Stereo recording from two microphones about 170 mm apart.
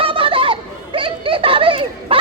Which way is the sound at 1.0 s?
30° right (ahead or behind).